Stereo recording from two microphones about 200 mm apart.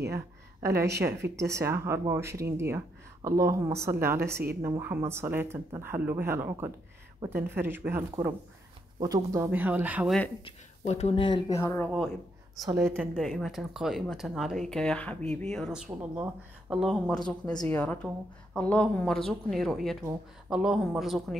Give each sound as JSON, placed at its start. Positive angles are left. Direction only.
{"t": 0.1, "sound": "a woman's voice", "side_deg": -15}
{"t": 10.4, "sound": "speech", "side_deg": 30}
{"t": 12.7, "sound": "speech", "side_deg": -10}
{"t": 17.2, "sound": "speech", "side_deg": 20}
{"t": 17.6, "sound": "speech", "side_deg": 10}